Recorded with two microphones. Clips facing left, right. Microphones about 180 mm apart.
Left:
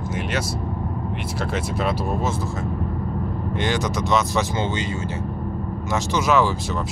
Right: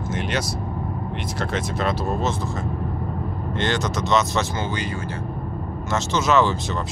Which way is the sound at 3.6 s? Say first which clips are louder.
Even; 10° left (ahead or behind).